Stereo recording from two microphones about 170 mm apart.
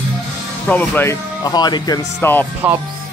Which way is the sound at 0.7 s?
10° left (ahead or behind).